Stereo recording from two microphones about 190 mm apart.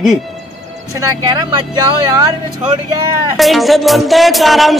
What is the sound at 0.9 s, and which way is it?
Speech, 20° right (ahead or behind).